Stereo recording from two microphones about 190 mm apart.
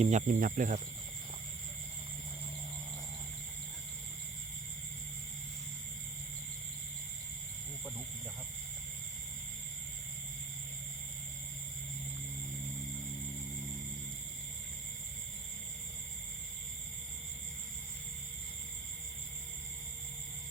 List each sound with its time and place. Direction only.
0.0 s speech: 40° right (ahead or behind)